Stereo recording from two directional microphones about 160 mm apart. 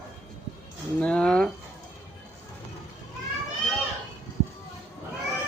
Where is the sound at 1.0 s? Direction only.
5° left (ahead or behind).